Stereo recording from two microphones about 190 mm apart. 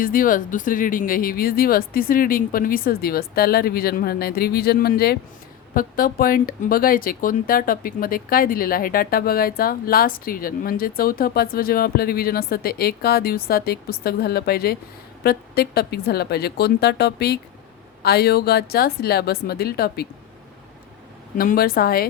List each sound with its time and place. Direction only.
0.0 s a woman's voice: 45° left (ahead or behind)
21.3 s speech: 50° left (ahead or behind)